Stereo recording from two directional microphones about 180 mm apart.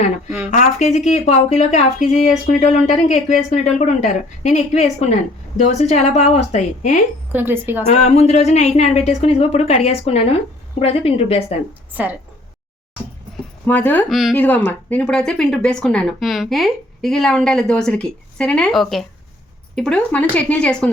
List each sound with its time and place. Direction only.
0.3 s a woman's voice: 10° right (ahead or behind)
0.5 s speech: 40° left (ahead or behind)
7.3 s a woman's voice: 10° right (ahead or behind)
7.9 s speech: 35° left (ahead or behind)
13.7 s speech: 10° left (ahead or behind)
14.1 s speech: centre (ahead or behind)